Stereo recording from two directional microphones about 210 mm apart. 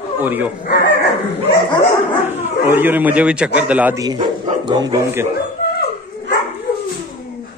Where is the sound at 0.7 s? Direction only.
50° left (ahead or behind).